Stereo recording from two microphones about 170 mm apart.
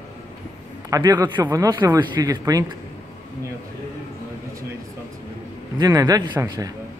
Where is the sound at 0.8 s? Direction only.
20° right (ahead or behind).